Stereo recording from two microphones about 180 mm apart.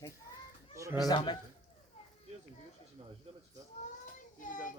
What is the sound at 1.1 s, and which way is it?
Speech, 25° left (ahead or behind).